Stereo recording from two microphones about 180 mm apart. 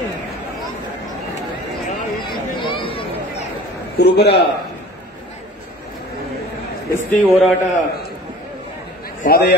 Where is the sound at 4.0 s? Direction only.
65° left (ahead or behind).